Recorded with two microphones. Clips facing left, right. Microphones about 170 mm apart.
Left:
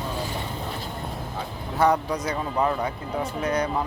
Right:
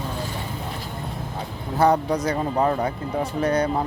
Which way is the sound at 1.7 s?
30° right (ahead or behind).